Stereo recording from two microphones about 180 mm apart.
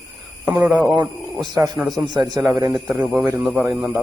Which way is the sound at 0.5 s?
10° right (ahead or behind).